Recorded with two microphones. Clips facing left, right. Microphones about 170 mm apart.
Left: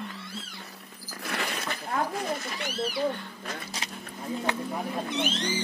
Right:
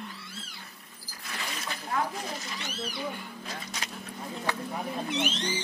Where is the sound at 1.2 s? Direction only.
65° left (ahead or behind).